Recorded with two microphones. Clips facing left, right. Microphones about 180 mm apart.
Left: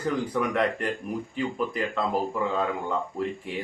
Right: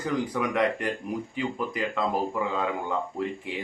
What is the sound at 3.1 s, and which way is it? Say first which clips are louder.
Speech: left 1 dB; 20° right (ahead or behind).